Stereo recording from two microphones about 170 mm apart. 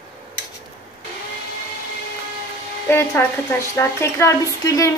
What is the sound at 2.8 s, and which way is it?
A woman's voice, 15° left (ahead or behind).